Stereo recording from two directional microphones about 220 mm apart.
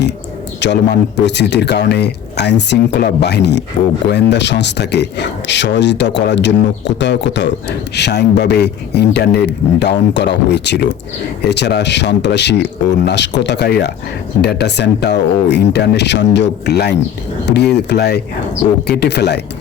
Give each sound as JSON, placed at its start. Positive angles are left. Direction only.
{"t": 0.6, "sound": "speech", "side_deg": 50}